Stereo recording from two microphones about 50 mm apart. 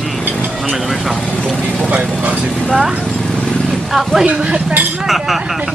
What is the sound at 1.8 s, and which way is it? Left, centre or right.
Speech, right.